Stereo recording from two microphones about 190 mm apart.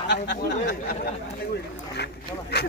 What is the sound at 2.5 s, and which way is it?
Speech, 60° left (ahead or behind).